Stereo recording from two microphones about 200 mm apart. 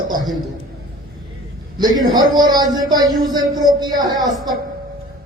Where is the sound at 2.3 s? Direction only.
20° right (ahead or behind).